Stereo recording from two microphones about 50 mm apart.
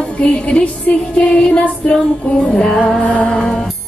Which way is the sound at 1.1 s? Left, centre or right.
Centre.